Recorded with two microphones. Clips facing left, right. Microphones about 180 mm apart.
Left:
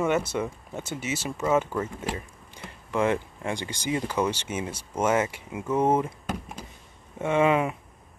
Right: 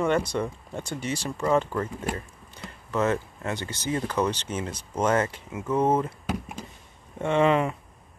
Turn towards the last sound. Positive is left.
turn(degrees=10)  # may be behind; listen again after turning